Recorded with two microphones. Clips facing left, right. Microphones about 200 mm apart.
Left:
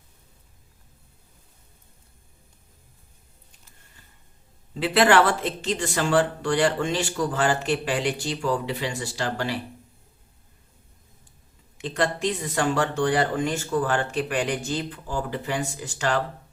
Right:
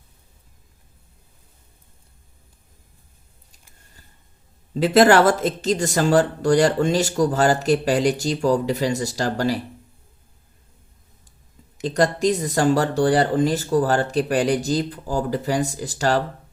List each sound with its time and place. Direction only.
4.7 s speech: 40° right (ahead or behind)
11.8 s speech: 40° right (ahead or behind)